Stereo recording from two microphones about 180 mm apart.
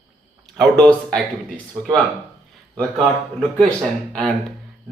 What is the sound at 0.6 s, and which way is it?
Speech, centre (ahead or behind).